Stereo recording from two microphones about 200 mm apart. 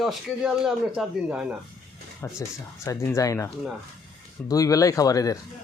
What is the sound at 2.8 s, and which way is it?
Speech, 15° left (ahead or behind).